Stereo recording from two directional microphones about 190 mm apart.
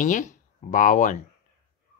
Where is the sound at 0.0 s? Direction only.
40° left (ahead or behind).